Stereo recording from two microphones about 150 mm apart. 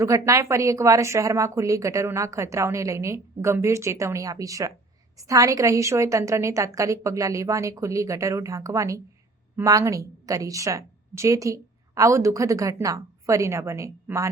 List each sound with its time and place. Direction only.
0.0 s a woman's voice: 20° right (ahead or behind)